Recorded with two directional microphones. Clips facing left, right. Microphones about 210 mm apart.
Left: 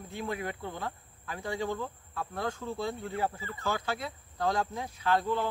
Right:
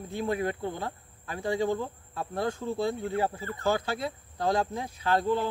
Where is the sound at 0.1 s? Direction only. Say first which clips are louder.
Right 6 dB; 30° right (ahead or behind).